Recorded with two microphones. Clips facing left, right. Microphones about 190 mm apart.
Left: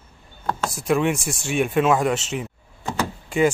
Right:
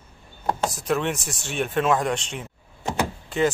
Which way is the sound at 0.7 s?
10° left (ahead or behind).